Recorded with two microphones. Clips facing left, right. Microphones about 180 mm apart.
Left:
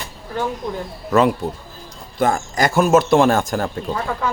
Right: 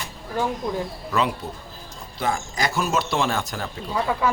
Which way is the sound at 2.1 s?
50° left (ahead or behind).